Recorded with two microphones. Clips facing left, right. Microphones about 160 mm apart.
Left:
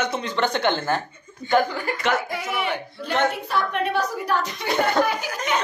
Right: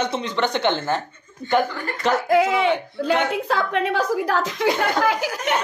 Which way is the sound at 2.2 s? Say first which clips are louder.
Right 9 dB; 90° right.